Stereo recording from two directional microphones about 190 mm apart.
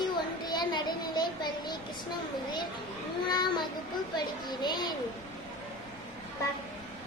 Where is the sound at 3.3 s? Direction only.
25° left (ahead or behind).